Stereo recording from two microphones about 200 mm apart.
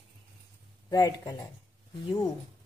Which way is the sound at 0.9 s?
20° left (ahead or behind).